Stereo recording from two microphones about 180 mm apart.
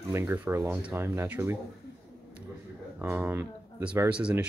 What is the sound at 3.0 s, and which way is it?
Speech, 10° right (ahead or behind).